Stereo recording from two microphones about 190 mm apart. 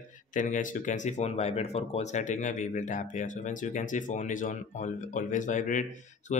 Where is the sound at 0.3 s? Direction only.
45° left (ahead or behind).